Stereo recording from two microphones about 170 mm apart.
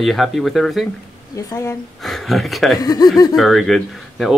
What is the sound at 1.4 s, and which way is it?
Speech, 15° left (ahead or behind).